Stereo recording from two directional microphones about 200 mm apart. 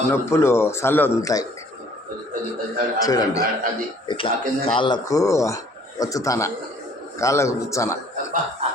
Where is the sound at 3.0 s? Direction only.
15° left (ahead or behind).